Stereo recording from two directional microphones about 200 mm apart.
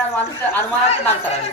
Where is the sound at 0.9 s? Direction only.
30° left (ahead or behind).